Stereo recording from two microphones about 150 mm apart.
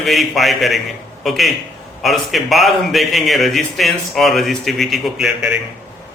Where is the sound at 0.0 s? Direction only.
Centre (ahead or behind).